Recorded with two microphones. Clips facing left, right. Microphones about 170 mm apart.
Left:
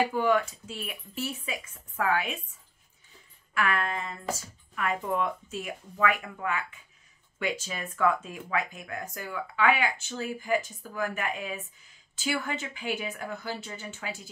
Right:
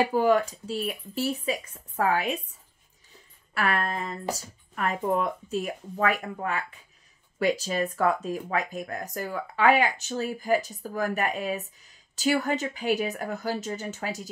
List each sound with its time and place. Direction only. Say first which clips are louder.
0.1 s speech: right 3 dB; 35° right (ahead or behind)
3.5 s speech: right 2 dB; 40° right (ahead or behind)